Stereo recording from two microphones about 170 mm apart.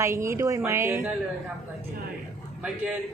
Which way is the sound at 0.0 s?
15° right (ahead or behind).